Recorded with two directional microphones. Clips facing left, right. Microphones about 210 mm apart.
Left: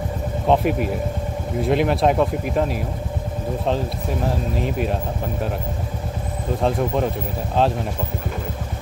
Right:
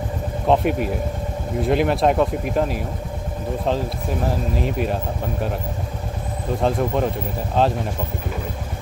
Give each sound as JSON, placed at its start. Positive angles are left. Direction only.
{"t": 0.5, "sound": "speech", "side_deg": 0}
{"t": 6.6, "sound": "speech", "side_deg": 0}